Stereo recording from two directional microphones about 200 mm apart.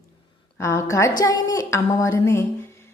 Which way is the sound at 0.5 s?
15° left (ahead or behind).